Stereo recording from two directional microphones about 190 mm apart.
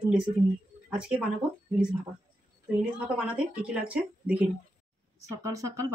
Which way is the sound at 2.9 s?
5° right (ahead or behind).